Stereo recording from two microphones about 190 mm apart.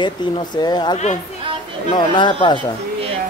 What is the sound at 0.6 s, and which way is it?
A man's voice, 20° left (ahead or behind).